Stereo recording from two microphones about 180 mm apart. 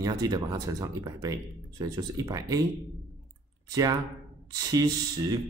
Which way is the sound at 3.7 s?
20° right (ahead or behind).